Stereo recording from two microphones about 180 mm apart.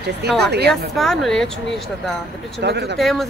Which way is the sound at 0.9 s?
Centre (ahead or behind).